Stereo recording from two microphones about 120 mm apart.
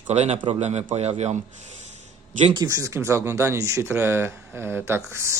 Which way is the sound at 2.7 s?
25° right (ahead or behind).